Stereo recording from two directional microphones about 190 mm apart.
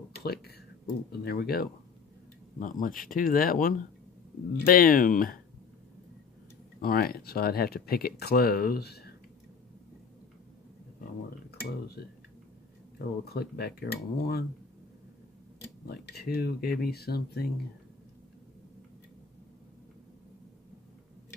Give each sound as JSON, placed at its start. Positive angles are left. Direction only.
{"t": 0.2, "sound": "speech", "side_deg": 55}
{"t": 6.8, "sound": "speech", "side_deg": 50}
{"t": 11.6, "sound": "speech", "side_deg": 55}
{"t": 13.2, "sound": "speech", "side_deg": 55}
{"t": 15.9, "sound": "speech", "side_deg": 55}